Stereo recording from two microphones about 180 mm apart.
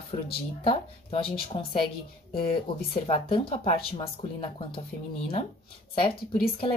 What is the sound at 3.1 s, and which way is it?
Speech, 30° left (ahead or behind).